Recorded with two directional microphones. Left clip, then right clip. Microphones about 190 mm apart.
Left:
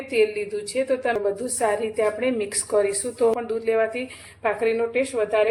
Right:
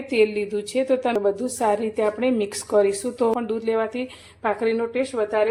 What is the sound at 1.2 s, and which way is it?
A woman's voice, 30° right (ahead or behind).